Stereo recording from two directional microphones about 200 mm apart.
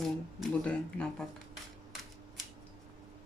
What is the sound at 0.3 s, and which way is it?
Speech, 5° left (ahead or behind).